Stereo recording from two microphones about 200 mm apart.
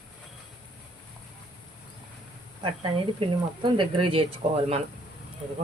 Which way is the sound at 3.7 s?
25° right (ahead or behind).